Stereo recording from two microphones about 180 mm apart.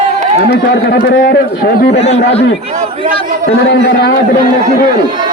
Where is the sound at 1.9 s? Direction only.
35° left (ahead or behind).